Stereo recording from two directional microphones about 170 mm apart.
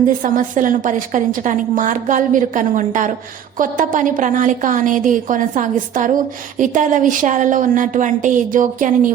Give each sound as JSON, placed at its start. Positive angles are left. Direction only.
{"t": 0.2, "sound": "a woman's voice", "side_deg": -50}